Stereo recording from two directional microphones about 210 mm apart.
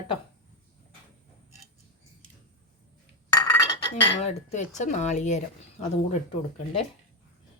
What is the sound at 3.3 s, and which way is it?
Chink, 20° left (ahead or behind).